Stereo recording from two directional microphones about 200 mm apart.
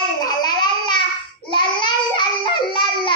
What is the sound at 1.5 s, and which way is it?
Babbling, 25° left (ahead or behind).